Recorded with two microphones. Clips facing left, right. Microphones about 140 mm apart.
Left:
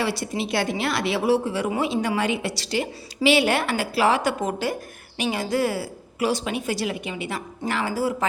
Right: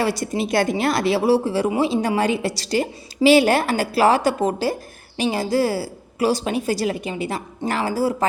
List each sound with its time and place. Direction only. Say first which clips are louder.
0.0 s a woman's voice: right 4 dB; 45° right (ahead or behind)